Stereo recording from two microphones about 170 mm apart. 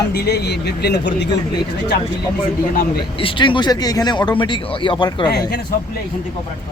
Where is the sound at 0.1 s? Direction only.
70° left (ahead or behind).